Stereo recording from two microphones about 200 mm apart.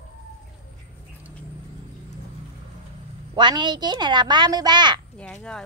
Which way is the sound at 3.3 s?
20° right (ahead or behind).